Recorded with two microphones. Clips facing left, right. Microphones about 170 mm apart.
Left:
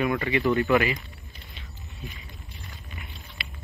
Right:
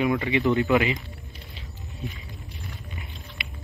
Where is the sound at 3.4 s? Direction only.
20° right (ahead or behind).